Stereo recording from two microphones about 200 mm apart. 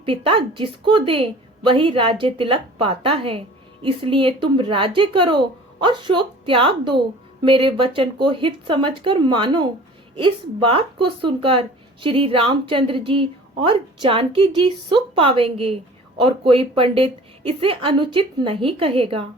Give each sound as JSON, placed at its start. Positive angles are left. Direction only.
{"t": 0.0, "sound": "speech", "side_deg": -25}